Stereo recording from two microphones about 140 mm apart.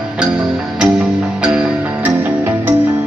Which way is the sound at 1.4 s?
10° right (ahead or behind).